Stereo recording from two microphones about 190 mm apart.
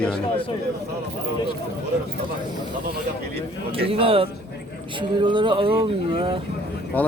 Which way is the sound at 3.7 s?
30° right (ahead or behind).